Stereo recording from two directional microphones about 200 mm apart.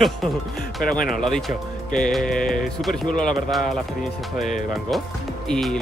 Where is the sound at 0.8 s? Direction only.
45° left (ahead or behind).